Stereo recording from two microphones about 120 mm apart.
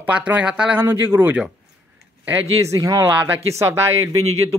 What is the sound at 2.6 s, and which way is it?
Speech, 25° right (ahead or behind).